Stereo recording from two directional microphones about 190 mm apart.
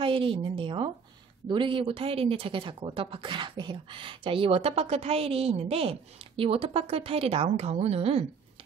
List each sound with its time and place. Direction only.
0.0 s speech: 30° right (ahead or behind)